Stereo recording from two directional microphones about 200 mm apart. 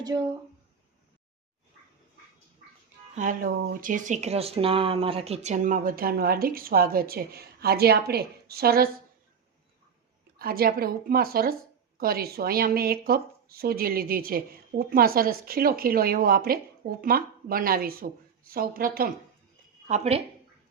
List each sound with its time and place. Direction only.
3.2 s speech: 45° right (ahead or behind)
10.3 s speech: 50° right (ahead or behind)
19.9 s speech: 30° right (ahead or behind)